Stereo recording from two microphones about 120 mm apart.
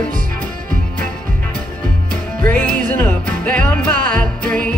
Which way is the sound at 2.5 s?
10° left (ahead or behind).